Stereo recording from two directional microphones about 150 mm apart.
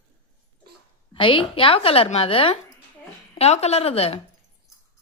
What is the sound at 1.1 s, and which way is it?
A woman's voice, 35° left (ahead or behind).